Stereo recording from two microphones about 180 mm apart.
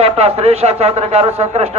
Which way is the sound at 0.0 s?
35° right (ahead or behind).